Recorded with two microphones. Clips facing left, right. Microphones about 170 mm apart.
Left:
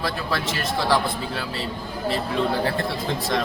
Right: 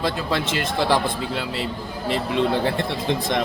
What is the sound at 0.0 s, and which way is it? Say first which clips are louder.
Speech: right 3 dB; 20° right (ahead or behind).